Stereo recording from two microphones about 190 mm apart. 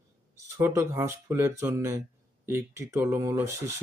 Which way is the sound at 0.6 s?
10° right (ahead or behind).